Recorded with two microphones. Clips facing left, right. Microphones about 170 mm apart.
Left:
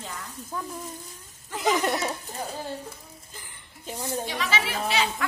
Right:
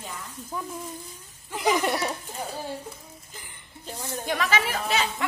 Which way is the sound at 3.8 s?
15° left (ahead or behind).